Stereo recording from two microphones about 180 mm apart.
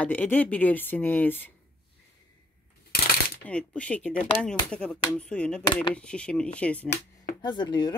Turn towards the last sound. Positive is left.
turn(degrees=25)  # may be behind; listen again after turning